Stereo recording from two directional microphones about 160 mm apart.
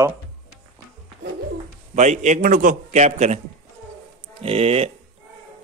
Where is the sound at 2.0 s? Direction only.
45° right (ahead or behind).